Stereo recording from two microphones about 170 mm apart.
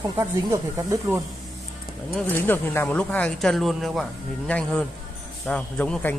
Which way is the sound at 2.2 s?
10° left (ahead or behind).